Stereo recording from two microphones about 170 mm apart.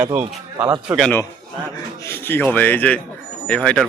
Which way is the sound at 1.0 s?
10° left (ahead or behind).